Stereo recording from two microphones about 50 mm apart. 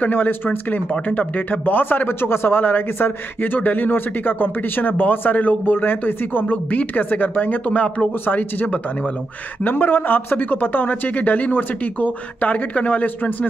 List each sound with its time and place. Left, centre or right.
0.0 s speech: left
9.7 s speech: left